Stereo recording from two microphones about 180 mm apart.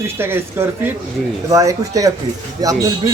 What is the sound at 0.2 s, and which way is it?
Speech, 15° right (ahead or behind).